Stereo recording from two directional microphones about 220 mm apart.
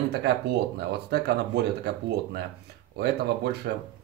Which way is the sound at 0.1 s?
50° right (ahead or behind).